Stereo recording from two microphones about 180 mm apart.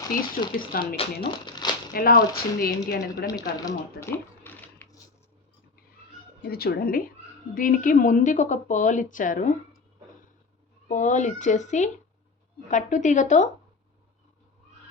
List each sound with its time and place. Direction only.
0.1 s a woman's voice: 55° left (ahead or behind)
0.9 s speech: 25° left (ahead or behind)
1.9 s speech: 55° left (ahead or behind)
3.2 s speech: 20° left (ahead or behind)
6.4 s a woman's voice: 60° left (ahead or behind)
10.8 s a woman's voice: 40° left (ahead or behind)